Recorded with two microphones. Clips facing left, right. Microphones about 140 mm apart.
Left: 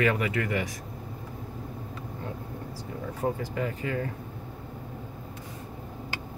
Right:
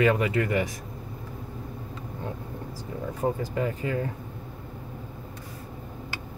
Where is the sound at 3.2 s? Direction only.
10° right (ahead or behind).